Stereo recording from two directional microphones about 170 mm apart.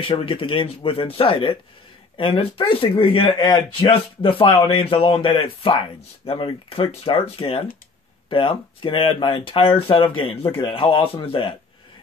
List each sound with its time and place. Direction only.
0.0 s speech: 30° left (ahead or behind)